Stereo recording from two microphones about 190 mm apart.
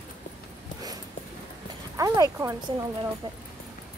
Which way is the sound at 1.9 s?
15° right (ahead or behind).